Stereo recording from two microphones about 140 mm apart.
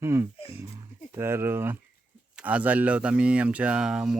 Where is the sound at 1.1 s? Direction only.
15° right (ahead or behind).